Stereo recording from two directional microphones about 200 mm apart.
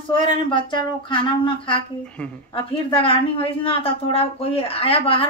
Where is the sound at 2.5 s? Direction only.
25° left (ahead or behind).